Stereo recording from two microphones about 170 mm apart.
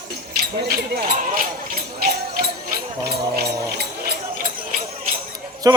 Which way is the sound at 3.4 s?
70° right (ahead or behind).